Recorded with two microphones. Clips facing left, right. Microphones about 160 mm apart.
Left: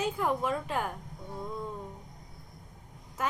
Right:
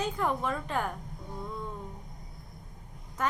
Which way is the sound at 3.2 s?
5° left (ahead or behind).